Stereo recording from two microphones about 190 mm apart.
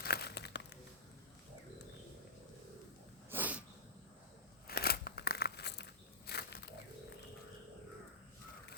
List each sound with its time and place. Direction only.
0.0 s crumpling: 55° left (ahead or behind)
3.2 s sneeze: 10° right (ahead or behind)
4.6 s scissors: 55° left (ahead or behind)